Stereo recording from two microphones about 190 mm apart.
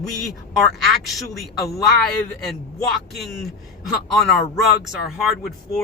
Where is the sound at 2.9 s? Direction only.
Centre (ahead or behind).